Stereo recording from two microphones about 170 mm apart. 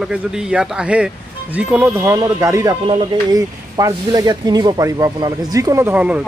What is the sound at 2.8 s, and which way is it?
Speech, 30° right (ahead or behind).